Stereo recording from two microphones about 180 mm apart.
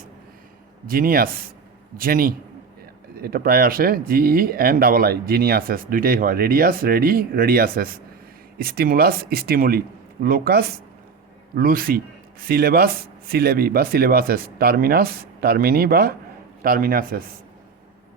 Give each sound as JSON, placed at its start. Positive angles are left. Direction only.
{"t": 0.9, "sound": "speech", "side_deg": -55}